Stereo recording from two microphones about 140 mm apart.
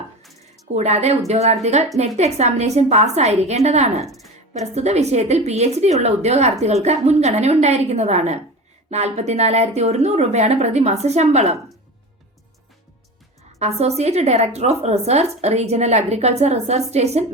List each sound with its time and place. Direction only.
0.2 s music: centre (ahead or behind)
0.7 s a woman's voice: 50° right (ahead or behind)
4.0 s a woman's voice: centre (ahead or behind)
4.5 s a woman's voice: 55° right (ahead or behind)
13.6 s a woman's voice: 50° right (ahead or behind)